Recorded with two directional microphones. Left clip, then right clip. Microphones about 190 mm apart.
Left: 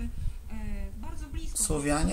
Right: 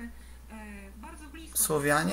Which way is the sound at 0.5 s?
30° left (ahead or behind).